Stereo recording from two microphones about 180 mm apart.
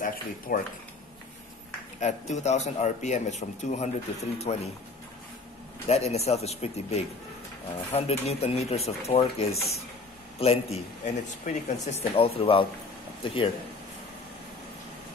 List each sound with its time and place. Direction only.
0.5 s speech: 50° left (ahead or behind)
2.0 s a man's voice: 40° left (ahead or behind)
5.9 s a man's voice: 35° left (ahead or behind)